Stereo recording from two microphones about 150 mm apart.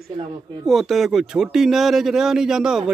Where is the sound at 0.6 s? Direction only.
Centre (ahead or behind).